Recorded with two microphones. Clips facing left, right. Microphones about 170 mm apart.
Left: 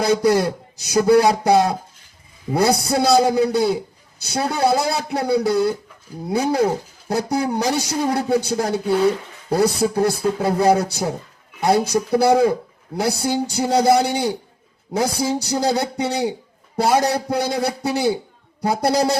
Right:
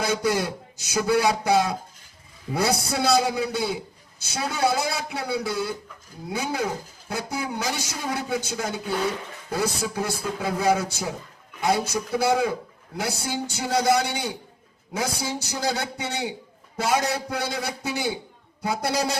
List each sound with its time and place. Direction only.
0.0 s speech: 35° left (ahead or behind)